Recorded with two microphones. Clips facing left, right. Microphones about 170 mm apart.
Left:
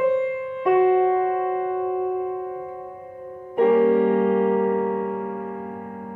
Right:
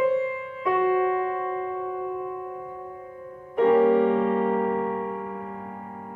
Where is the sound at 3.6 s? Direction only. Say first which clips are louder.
Left 1 dB; 10° left (ahead or behind).